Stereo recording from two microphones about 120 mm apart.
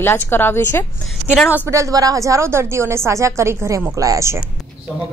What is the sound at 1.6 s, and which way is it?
A woman's voice, 25° right (ahead or behind).